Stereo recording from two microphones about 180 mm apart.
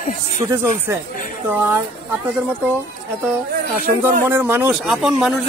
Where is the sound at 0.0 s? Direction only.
45° left (ahead or behind).